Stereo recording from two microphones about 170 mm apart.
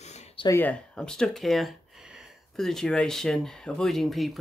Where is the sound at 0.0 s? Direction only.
40° left (ahead or behind).